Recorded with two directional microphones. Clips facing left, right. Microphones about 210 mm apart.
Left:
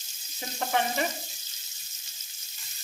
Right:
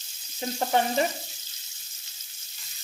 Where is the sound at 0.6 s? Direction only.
35° right (ahead or behind).